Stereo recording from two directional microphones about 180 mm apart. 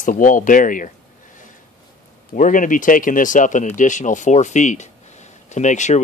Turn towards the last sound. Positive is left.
turn(degrees=40)  # may be behind; listen again after turning